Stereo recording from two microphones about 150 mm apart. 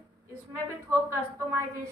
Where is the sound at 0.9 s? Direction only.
20° right (ahead or behind).